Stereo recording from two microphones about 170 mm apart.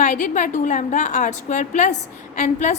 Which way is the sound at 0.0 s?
45° left (ahead or behind).